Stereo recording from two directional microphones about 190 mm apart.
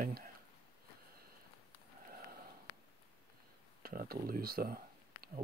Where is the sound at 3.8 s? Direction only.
50° right (ahead or behind).